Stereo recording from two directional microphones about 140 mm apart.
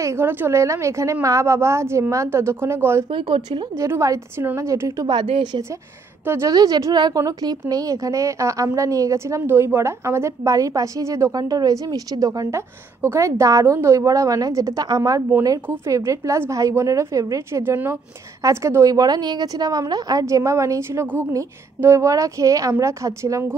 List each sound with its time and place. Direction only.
0.0 s a woman's voice: 20° right (ahead or behind)
3.1 s speech: 40° right (ahead or behind)
3.7 s a woman's voice: 20° right (ahead or behind)
5.3 s speech: 35° right (ahead or behind)
6.2 s a woman's voice: 20° right (ahead or behind)